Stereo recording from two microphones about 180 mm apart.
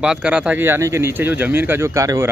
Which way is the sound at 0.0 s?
5° right (ahead or behind).